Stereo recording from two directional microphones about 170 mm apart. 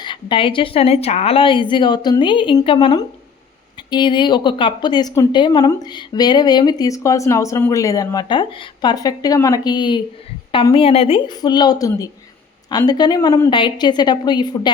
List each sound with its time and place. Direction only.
0.0 s a woman's voice: 30° left (ahead or behind)